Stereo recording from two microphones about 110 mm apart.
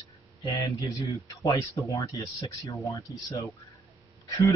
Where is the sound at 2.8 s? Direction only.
30° left (ahead or behind).